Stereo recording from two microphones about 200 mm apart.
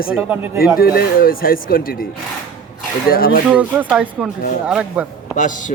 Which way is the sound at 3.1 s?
45° left (ahead or behind).